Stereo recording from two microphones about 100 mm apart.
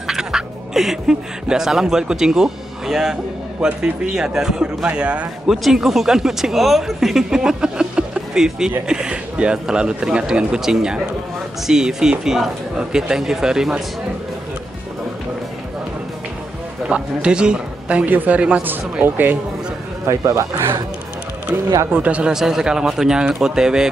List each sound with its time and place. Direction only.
0.0 s speech: 5° right (ahead or behind)
16.8 s speech: 10° right (ahead or behind)
20.1 s speech: 30° right (ahead or behind)
21.9 s speech: 15° right (ahead or behind)